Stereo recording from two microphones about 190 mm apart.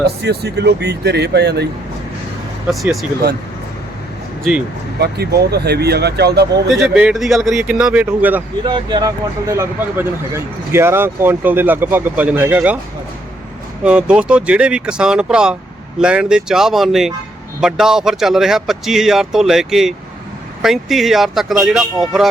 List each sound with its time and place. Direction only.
0.2 s speech: 60° right (ahead or behind)
2.6 s a man's voice: centre (ahead or behind)
4.9 s speech: 55° right (ahead or behind)
6.7 s a man's voice: 5° right (ahead or behind)
8.6 s speech: 25° right (ahead or behind)
13.8 s a man's voice: 5° right (ahead or behind)